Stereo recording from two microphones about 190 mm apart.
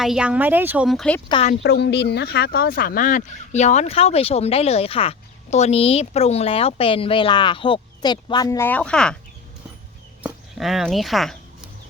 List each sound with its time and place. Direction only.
0.0 s speech: 5° right (ahead or behind)
1.6 s speech: 60° left (ahead or behind); by 9.1 s 5° left (ahead or behind)
10.2 s a sound: centre (ahead or behind)